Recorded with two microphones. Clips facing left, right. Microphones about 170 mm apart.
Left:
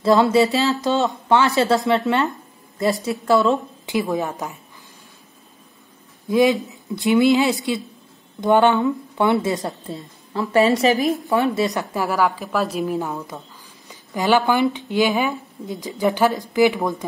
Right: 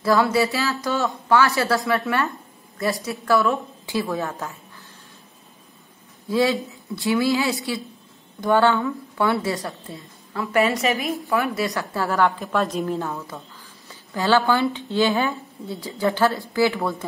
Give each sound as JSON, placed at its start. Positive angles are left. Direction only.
{"t": 0.0, "sound": "a woman's voice", "side_deg": 25}
{"t": 6.2, "sound": "a woman's voice", "side_deg": 20}
{"t": 11.2, "sound": "a woman's voice", "side_deg": 25}
{"t": 12.2, "sound": "speech", "side_deg": 0}